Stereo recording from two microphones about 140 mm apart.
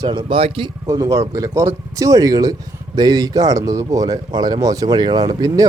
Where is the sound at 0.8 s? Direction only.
25° right (ahead or behind).